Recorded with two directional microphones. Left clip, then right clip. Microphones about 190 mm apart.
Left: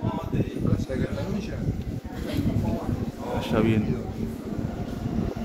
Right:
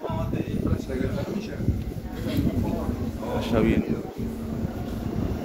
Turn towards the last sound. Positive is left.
turn(degrees=15)  # may be behind; listen again after turning